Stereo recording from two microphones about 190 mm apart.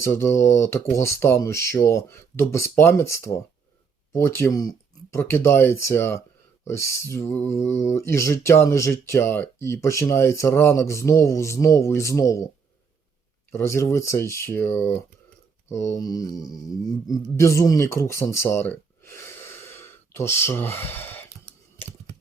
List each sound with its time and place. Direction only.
0.0 s speech: 15° left (ahead or behind)
13.5 s speech: 15° left (ahead or behind)
15.7 s mantra: 15° left (ahead or behind)
17.1 s speech: 15° left (ahead or behind)